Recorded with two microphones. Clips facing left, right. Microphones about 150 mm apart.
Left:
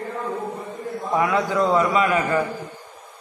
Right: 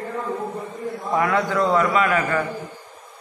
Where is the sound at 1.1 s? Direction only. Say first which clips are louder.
Even; 15° left (ahead or behind).